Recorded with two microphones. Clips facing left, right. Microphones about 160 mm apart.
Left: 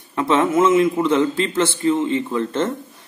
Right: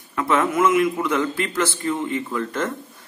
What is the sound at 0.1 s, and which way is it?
A man's voice, 25° left (ahead or behind).